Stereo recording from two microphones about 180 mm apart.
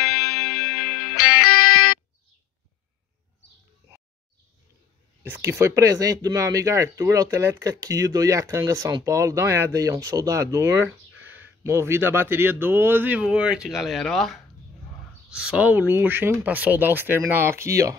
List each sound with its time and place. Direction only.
0.0 s music: 60° left (ahead or behind)
5.2 s speech: 15° right (ahead or behind)